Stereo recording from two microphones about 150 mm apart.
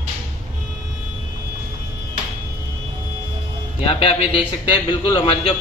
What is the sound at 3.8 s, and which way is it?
A man's voice, 40° left (ahead or behind).